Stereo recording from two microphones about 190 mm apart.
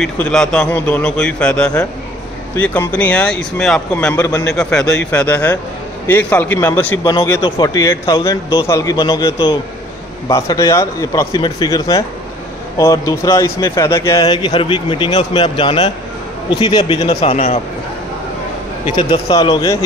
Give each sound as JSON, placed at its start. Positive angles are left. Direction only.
{"t": 0.0, "sound": "a man's voice", "side_deg": 5}
{"t": 4.5, "sound": "a man's voice", "side_deg": 5}
{"t": 18.9, "sound": "speech", "side_deg": 25}